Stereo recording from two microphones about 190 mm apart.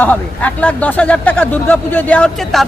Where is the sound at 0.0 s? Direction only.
10° left (ahead or behind).